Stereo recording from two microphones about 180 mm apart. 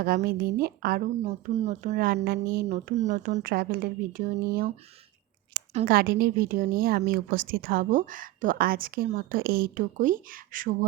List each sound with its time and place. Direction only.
0.3 s a woman's voice: 60° right (ahead or behind)
1.2 s speech: 35° right (ahead or behind)
2.2 s a woman's voice: 60° right (ahead or behind)
2.6 s a woman's voice: 40° right (ahead or behind); by 4.7 s 55° right (ahead or behind)
5.8 s a woman's voice: 55° right (ahead or behind)